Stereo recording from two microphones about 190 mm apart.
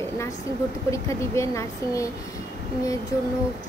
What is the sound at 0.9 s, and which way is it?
Speech, 15° left (ahead or behind).